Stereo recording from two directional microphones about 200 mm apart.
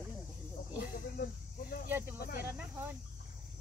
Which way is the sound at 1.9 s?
10° right (ahead or behind).